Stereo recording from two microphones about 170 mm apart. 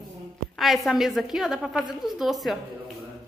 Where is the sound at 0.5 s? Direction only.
Centre (ahead or behind).